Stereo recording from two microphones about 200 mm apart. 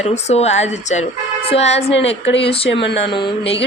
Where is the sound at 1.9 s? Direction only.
65° left (ahead or behind).